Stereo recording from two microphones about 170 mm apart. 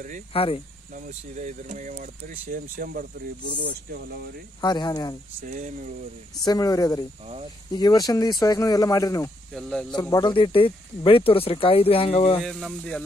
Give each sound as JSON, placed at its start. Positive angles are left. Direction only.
{"t": 0.3, "sound": "speech", "side_deg": 35}
{"t": 1.0, "sound": "speech", "side_deg": -50}
{"t": 4.6, "sound": "speech", "side_deg": 25}
{"t": 5.5, "sound": "speech", "side_deg": -50}
{"t": 6.4, "sound": "speech", "side_deg": 20}
{"t": 9.5, "sound": "speech", "side_deg": 0}
{"t": 9.9, "sound": "speech", "side_deg": 25}
{"t": 12.4, "sound": "speech", "side_deg": 0}